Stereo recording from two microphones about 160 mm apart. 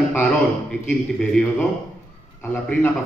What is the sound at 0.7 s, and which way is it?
A man's voice, 5° left (ahead or behind).